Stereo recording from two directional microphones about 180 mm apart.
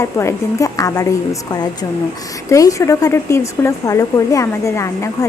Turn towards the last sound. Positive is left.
turn(degrees=15)  # may be behind; listen again after turning